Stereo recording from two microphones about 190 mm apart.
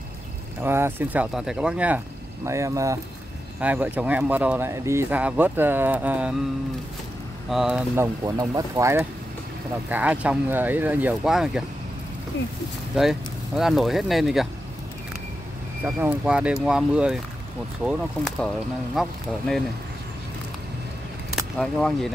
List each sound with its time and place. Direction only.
0.6 s speech: 10° right (ahead or behind)
7.4 s speech: centre (ahead or behind)
12.3 s speech: 80° left
12.9 s speech: centre (ahead or behind)
15.8 s speech: 5° right (ahead or behind)
21.4 s speech: 5° left (ahead or behind)